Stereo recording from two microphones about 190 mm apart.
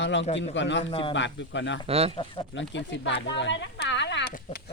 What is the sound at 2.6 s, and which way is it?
Speech, 70° left (ahead or behind).